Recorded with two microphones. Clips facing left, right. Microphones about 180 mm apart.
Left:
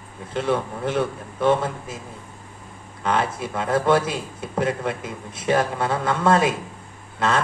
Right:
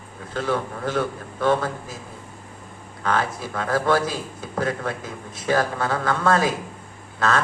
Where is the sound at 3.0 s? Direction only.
25° left (ahead or behind).